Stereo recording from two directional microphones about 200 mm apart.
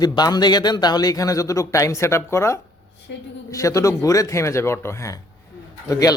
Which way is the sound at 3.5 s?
15° left (ahead or behind).